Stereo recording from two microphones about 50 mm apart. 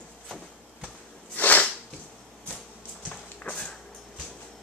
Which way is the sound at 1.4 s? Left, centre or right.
Left.